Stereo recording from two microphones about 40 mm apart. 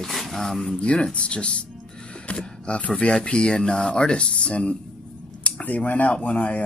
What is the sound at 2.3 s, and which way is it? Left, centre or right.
Speech, left.